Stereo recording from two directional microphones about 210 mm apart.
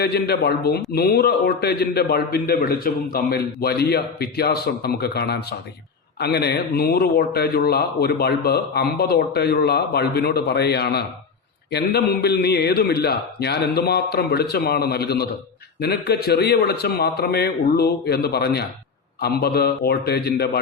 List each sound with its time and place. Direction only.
0.0 s a man's voice: 50° left (ahead or behind)